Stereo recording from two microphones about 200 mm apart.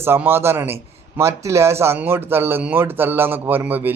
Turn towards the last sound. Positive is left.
turn(degrees=-10)  # may be behind; listen again after turning